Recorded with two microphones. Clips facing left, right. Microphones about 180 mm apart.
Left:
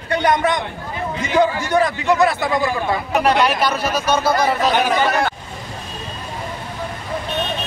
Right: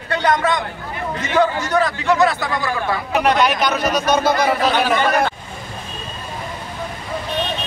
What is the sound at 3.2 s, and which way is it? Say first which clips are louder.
Speech: even; 30° left (ahead or behind).